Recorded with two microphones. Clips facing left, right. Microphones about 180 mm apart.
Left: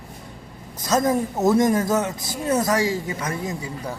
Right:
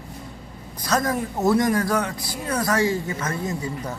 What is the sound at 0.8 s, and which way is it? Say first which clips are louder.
A woman's voice: left 3 dB; 20° left (ahead or behind).